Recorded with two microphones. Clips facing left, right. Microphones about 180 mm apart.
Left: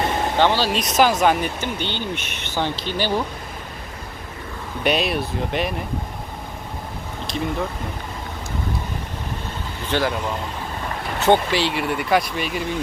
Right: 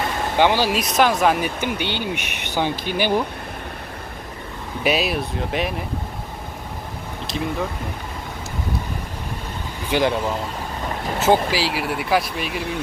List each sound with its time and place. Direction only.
0.3 s speech: 15° right (ahead or behind)
1.6 s speech: 10° right (ahead or behind)
4.8 s speech: 5° right (ahead or behind)
7.3 s speech: centre (ahead or behind)
9.9 s speech: 10° right (ahead or behind)